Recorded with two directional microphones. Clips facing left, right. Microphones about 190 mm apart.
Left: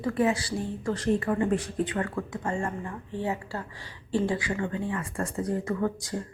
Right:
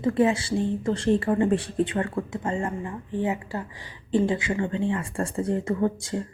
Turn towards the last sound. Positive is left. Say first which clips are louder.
# right 4 dB
turn(degrees=-25)  # may be behind; listen again after turning